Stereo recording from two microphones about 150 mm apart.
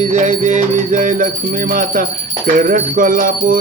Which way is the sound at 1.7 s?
65° right (ahead or behind).